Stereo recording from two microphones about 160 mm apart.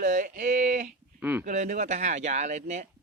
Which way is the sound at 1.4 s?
50° right (ahead or behind).